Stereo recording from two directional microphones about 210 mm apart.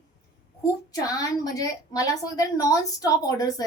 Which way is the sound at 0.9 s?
15° left (ahead or behind).